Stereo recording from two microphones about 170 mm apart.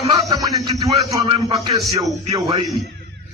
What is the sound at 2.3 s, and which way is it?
Speech, 25° right (ahead or behind).